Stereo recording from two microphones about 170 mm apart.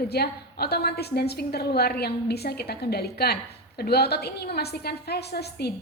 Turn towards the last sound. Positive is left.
turn(degrees=75)  # may be behind; listen again after turning